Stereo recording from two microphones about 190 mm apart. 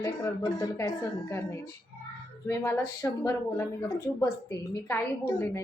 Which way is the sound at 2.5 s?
15° left (ahead or behind).